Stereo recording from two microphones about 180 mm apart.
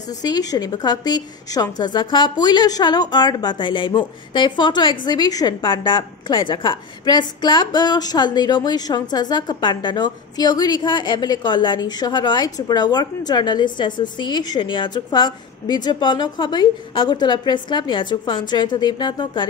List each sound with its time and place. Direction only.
0.2 s a woman's voice: 20° left (ahead or behind)